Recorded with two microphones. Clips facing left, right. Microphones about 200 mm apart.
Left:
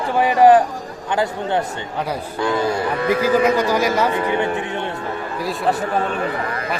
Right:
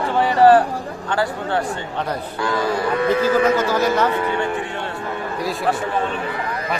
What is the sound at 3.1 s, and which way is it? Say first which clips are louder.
Speech: left 1 dB; 15° left (ahead or behind).